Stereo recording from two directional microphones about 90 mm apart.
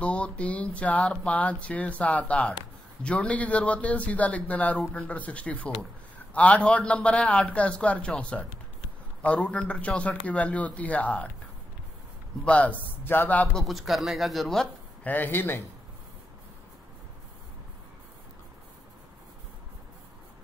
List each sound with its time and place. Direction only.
0.0 s speech: 15° left (ahead or behind)
12.4 s speech: 15° left (ahead or behind)
13.6 s speech: centre (ahead or behind)
15.0 s speech: 20° left (ahead or behind)